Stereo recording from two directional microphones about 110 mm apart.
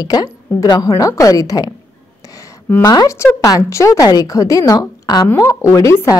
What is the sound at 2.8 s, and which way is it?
A woman's voice, 35° left (ahead or behind).